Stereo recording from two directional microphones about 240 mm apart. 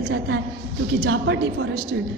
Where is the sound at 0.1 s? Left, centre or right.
Right.